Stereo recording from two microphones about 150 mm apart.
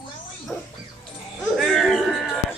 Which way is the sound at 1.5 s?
Centre (ahead or behind).